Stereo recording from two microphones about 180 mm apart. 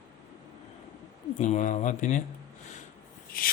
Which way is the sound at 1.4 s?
40° left (ahead or behind).